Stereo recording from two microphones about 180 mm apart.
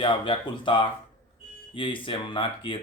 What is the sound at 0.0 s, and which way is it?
Speech, 30° left (ahead or behind).